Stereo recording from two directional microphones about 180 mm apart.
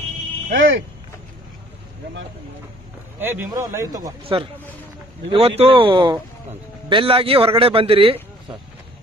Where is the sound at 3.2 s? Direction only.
10° right (ahead or behind).